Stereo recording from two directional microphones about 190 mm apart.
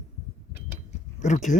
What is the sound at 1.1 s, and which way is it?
Speech, 40° left (ahead or behind).